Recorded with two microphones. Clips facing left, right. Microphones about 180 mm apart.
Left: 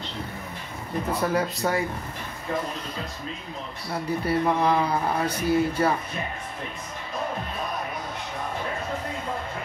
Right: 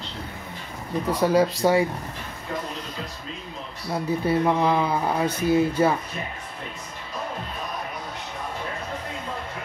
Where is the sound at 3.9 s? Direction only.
20° right (ahead or behind).